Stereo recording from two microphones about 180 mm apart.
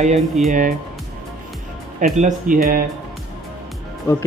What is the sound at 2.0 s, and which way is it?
Speech, 45° right (ahead or behind).